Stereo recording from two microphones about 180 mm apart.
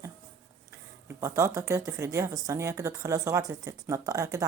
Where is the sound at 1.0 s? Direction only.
15° right (ahead or behind).